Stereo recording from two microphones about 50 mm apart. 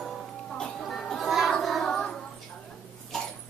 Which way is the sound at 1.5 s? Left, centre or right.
Centre.